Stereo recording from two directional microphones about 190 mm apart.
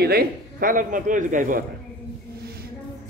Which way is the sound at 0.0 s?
50° right (ahead or behind).